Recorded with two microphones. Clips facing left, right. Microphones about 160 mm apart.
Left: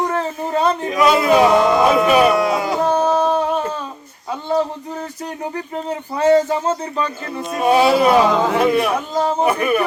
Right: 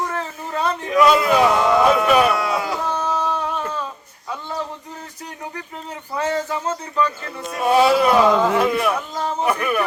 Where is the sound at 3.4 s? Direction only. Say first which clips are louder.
Left 6 dB; 30° left (ahead or behind).